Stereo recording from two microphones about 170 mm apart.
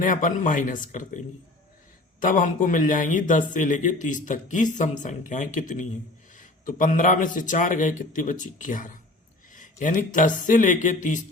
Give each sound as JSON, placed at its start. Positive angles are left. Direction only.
{"t": 0.0, "sound": "speech", "side_deg": 50}
{"t": 2.2, "sound": "speech", "side_deg": 50}